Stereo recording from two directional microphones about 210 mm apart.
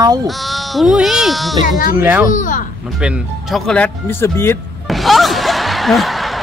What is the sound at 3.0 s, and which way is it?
Speech, centre (ahead or behind).